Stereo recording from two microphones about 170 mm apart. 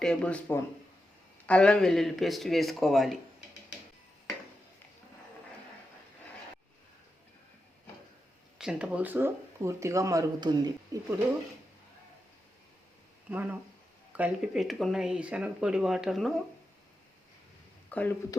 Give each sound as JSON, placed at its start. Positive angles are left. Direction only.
{"t": 0.0, "sound": "speech", "side_deg": 5}
{"t": 8.5, "sound": "speech", "side_deg": -5}
{"t": 13.3, "sound": "speech", "side_deg": -10}
{"t": 17.8, "sound": "a sound", "side_deg": 10}